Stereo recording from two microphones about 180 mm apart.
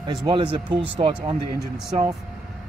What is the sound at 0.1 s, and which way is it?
Speech, 25° right (ahead or behind).